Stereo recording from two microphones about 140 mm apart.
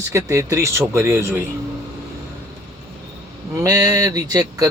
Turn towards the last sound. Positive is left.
turn(degrees=-25)  # may be behind; listen again after turning